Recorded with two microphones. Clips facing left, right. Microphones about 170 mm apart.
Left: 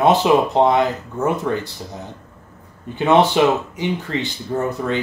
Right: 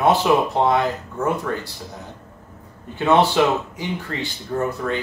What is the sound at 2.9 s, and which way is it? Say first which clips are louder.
Speech: left 2 dB; 20° left (ahead or behind).